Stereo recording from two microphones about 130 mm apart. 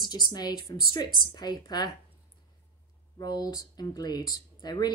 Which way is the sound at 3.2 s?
30° left (ahead or behind).